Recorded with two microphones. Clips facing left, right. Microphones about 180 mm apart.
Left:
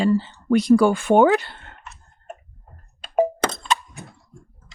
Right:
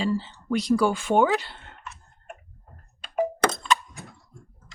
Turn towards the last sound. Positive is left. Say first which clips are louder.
# left 4 dB
turn(degrees=30)  # may be behind; listen again after turning